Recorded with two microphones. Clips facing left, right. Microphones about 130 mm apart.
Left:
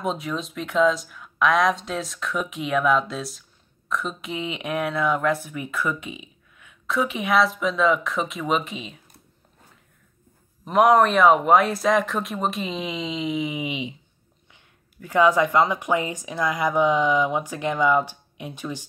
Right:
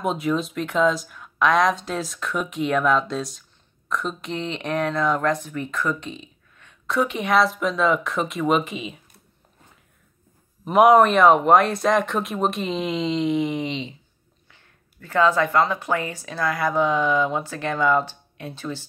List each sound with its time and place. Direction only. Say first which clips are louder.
0.0 s speech: right 4 dB; centre (ahead or behind)
10.6 s speech: right 3 dB; 5° right (ahead or behind); by 18.9 s 15° left (ahead or behind)